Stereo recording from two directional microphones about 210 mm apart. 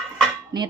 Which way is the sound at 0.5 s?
20° right (ahead or behind).